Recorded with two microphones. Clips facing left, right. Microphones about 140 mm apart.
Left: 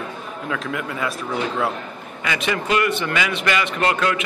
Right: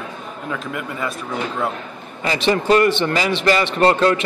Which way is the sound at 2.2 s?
30° right (ahead or behind).